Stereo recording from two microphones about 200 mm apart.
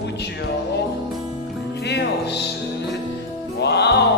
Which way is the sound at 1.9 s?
55° left (ahead or behind).